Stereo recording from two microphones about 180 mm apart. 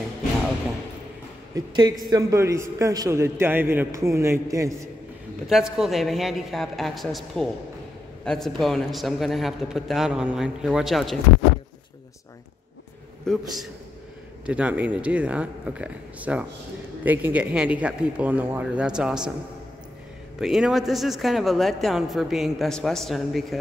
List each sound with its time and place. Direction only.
1.5 s a man's voice: 20° right (ahead or behind)
5.5 s a man's voice: centre (ahead or behind)
13.3 s a man's voice: 5° left (ahead or behind)
20.3 s a man's voice: centre (ahead or behind)